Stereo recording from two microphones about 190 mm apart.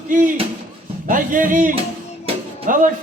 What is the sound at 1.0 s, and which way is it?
A man's voice, 45° right (ahead or behind).